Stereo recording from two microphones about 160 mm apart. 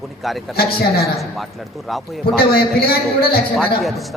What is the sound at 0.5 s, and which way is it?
Speech, 70° left (ahead or behind).